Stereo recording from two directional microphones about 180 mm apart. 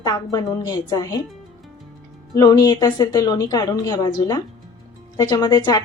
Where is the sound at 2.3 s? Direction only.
20° left (ahead or behind).